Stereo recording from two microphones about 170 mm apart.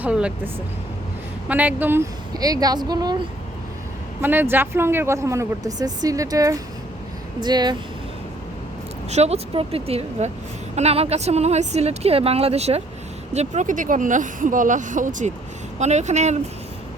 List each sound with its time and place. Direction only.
0.0 s speech: 5° right (ahead or behind)
2.3 s speech: 20° right (ahead or behind)
4.2 s speech: 10° right (ahead or behind)
9.0 s a woman's voice: 40° right (ahead or behind)